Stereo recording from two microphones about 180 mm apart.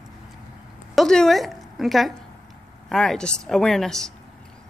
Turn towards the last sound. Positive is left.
turn(degrees=5)  # may be behind; listen again after turning